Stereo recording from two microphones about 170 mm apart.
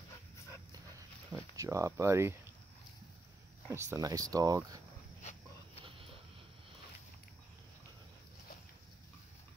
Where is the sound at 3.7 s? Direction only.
15° right (ahead or behind).